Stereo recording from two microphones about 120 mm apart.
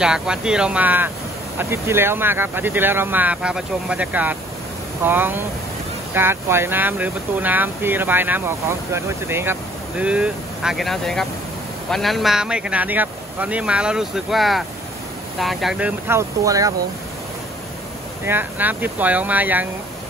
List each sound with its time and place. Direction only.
0.0 s speech: 5° right (ahead or behind)
16.1 s speech: 25° right (ahead or behind)
18.2 s speech: 15° right (ahead or behind)